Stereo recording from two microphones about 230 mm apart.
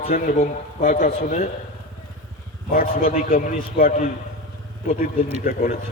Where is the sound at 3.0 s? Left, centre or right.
Left.